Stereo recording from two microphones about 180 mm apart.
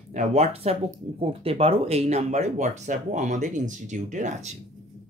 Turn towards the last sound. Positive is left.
turn(degrees=-45)  # may be behind; listen again after turning